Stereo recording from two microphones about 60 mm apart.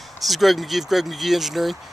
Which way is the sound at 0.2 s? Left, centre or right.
Centre.